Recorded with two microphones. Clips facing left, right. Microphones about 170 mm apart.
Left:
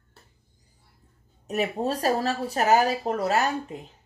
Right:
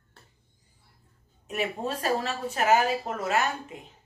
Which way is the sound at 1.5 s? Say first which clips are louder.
Left 4 dB; 40° left (ahead or behind).